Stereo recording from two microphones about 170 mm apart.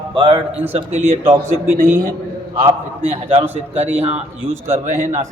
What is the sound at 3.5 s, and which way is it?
A man's voice, 10° right (ahead or behind).